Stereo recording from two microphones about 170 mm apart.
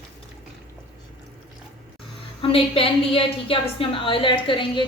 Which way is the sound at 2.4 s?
30° left (ahead or behind).